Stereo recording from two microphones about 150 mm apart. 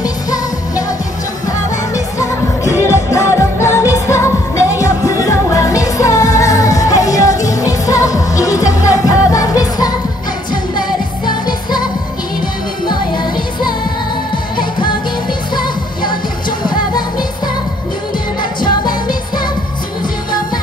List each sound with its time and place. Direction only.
0.0 s music: 25° left (ahead or behind)
2.0 s music: 20° left (ahead or behind)
12.8 s music: 30° left (ahead or behind)
18.4 s music: 30° left (ahead or behind)